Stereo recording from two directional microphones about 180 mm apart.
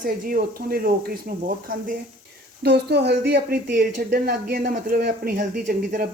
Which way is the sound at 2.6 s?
65° right (ahead or behind).